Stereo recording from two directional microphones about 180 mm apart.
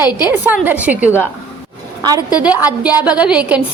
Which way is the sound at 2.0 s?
20° right (ahead or behind).